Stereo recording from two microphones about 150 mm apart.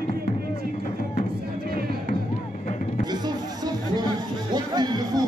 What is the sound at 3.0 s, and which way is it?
Music, 25° right (ahead or behind).